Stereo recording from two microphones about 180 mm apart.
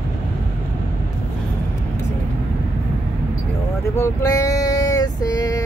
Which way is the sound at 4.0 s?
15° left (ahead or behind).